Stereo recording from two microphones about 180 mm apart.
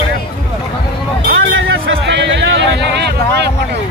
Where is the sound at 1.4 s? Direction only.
90° right; by 3.5 s 70° right (ahead or behind).